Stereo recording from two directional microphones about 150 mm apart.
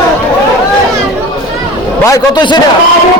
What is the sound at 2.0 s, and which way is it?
Speech, 25° left (ahead or behind).